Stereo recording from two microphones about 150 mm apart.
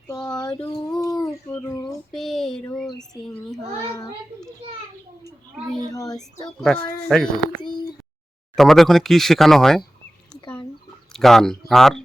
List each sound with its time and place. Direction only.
0.3 s a sound: 25° left (ahead or behind)
1.5 s speech: 20° left (ahead or behind)
2.1 s speech: centre (ahead or behind)
5.9 s speech: 25° left (ahead or behind)
6.6 s speech: 5° left (ahead or behind)
8.5 s speech: centre (ahead or behind)
11.1 s speech: 5° left (ahead or behind)